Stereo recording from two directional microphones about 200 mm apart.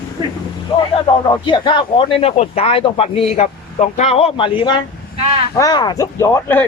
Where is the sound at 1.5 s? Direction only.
25° left (ahead or behind).